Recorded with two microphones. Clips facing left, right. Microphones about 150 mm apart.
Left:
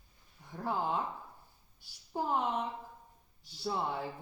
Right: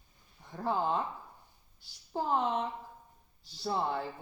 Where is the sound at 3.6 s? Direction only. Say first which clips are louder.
Right 2 dB; 5° left (ahead or behind).